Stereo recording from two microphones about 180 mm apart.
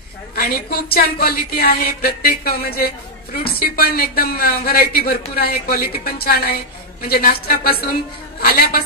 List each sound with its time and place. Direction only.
0.4 s speech: 55° left (ahead or behind)